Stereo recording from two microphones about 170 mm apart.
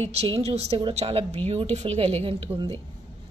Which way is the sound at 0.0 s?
35° right (ahead or behind).